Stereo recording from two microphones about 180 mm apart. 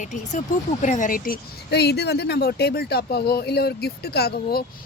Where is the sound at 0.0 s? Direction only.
45° left (ahead or behind).